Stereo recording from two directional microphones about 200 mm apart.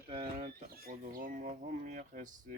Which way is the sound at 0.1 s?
30° right (ahead or behind).